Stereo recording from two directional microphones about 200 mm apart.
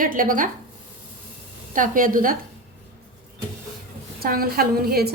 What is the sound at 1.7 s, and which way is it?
Speech, 40° right (ahead or behind).